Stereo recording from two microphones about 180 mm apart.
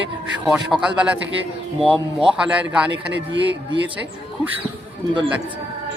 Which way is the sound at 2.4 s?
5° right (ahead or behind).